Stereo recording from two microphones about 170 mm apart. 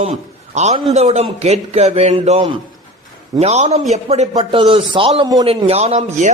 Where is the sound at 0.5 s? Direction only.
40° right (ahead or behind).